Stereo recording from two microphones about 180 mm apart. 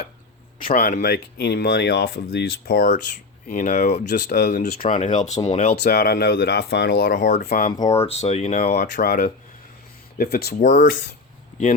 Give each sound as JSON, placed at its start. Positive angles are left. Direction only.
{"t": 0.6, "sound": "speech", "side_deg": 60}
{"t": 5.7, "sound": "speech", "side_deg": 70}
{"t": 6.0, "sound": "speech", "side_deg": 60}
{"t": 7.4, "sound": "speech", "side_deg": 55}
{"t": 8.0, "sound": "speech", "side_deg": 35}
{"t": 8.5, "sound": "speech", "side_deg": 60}